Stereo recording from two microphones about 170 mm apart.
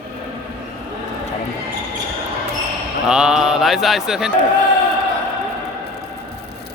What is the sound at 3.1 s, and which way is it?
Speech, 5° right (ahead or behind).